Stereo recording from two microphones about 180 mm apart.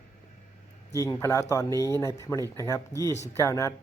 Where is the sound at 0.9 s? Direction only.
15° left (ahead or behind).